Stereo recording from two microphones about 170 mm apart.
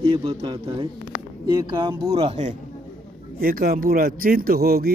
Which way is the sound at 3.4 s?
60° right (ahead or behind).